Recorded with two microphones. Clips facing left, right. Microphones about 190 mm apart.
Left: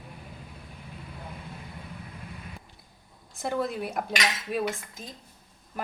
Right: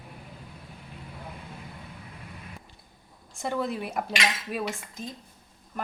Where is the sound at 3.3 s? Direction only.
Centre (ahead or behind).